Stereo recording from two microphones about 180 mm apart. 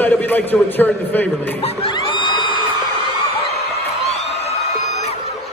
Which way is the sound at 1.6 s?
35° left (ahead or behind).